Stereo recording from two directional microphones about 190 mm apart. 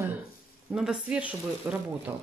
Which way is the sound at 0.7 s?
5° right (ahead or behind).